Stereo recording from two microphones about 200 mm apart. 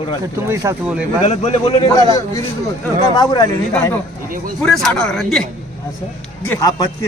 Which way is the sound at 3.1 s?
20° left (ahead or behind).